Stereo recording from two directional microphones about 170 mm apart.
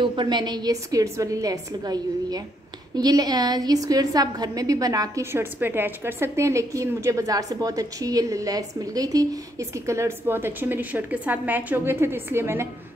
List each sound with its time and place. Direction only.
0.0 s a woman's voice: 30° right (ahead or behind)